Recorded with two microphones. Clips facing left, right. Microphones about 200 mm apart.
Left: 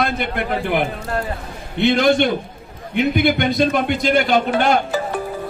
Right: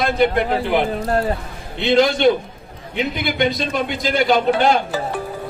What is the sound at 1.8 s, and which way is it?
Speech, 50° left (ahead or behind).